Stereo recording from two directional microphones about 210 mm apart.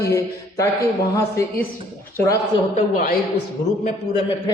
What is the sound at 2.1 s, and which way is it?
Speech, 15° left (ahead or behind).